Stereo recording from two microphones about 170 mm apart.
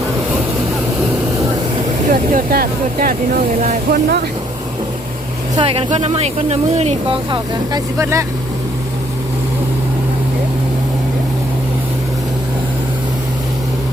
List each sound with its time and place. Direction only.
2.0 s speech: 55° right (ahead or behind)
5.5 s speech: 35° right (ahead or behind)
7.3 s speech: 25° right (ahead or behind)